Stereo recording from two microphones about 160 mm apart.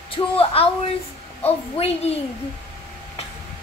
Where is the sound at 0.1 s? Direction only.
35° left (ahead or behind).